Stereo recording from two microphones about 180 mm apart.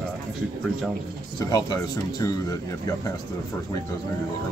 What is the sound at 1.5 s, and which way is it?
Speech, 20° left (ahead or behind).